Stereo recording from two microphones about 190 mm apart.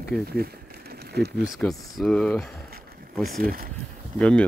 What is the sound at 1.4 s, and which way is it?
Speech, centre (ahead or behind).